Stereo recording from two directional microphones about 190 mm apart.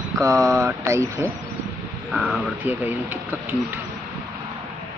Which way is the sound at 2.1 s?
5° right (ahead or behind).